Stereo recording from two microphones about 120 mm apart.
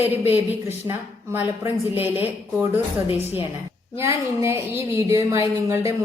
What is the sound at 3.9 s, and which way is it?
Speech, 25° right (ahead or behind).